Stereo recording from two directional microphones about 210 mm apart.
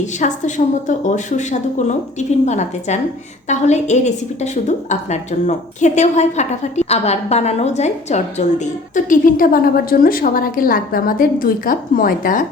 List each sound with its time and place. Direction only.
0.0 s a woman's voice: 35° left (ahead or behind)